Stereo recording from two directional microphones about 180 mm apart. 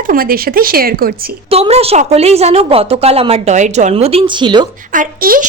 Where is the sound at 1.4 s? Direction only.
35° right (ahead or behind).